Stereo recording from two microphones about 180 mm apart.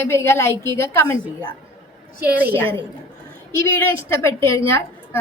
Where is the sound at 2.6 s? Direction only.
10° left (ahead or behind).